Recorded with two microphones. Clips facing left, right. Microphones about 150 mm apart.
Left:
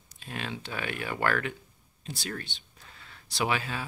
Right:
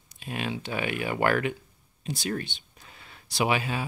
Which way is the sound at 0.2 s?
15° right (ahead or behind).